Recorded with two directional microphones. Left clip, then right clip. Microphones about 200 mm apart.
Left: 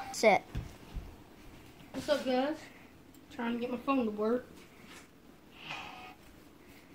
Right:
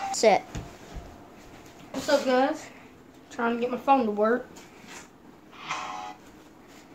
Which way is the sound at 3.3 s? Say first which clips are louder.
Right 10 dB; 15° right (ahead or behind).